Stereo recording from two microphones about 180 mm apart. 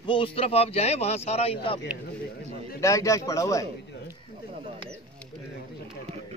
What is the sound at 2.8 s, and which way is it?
Speech, 15° left (ahead or behind).